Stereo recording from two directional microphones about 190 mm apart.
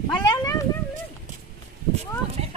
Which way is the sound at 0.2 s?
20° left (ahead or behind).